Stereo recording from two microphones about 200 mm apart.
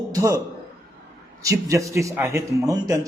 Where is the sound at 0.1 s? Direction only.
15° right (ahead or behind).